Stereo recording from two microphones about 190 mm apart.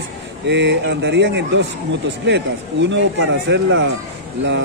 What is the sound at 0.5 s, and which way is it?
Speech, 65° right (ahead or behind).